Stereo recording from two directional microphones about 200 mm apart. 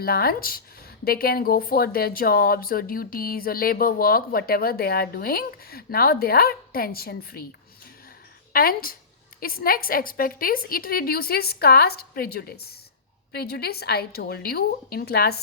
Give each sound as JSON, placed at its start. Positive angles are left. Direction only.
{"t": 0.0, "sound": "speech", "side_deg": 50}
{"t": 8.5, "sound": "speech", "side_deg": 45}